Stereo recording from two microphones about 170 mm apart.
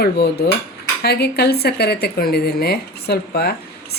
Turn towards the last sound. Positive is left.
turn(degrees=70)  # may be behind; listen again after turning